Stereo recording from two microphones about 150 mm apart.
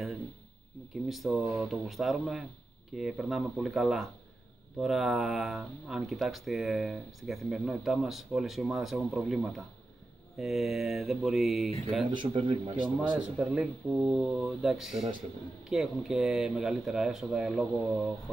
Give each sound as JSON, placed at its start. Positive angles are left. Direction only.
{"t": 1.0, "sound": "speech", "side_deg": 0}
{"t": 12.1, "sound": "speech", "side_deg": -35}
{"t": 13.2, "sound": "speech", "side_deg": -5}